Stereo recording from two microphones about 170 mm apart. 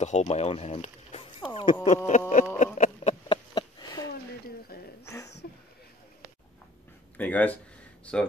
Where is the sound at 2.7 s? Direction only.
50° left (ahead or behind).